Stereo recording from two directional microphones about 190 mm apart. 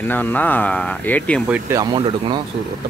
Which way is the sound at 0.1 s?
10° left (ahead or behind).